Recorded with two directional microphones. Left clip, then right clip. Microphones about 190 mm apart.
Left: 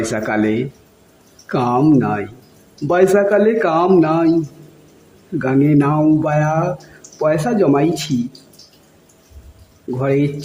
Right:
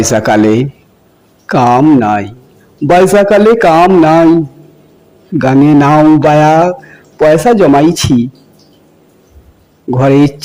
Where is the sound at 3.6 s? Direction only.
35° right (ahead or behind).